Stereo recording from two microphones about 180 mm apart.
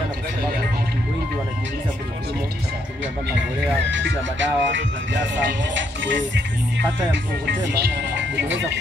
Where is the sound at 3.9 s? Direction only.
90° right.